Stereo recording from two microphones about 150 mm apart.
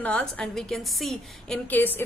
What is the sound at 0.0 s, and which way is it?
A woman's voice, 5° left (ahead or behind).